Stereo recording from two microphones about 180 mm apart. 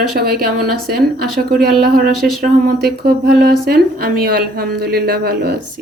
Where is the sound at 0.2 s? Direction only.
55° right (ahead or behind).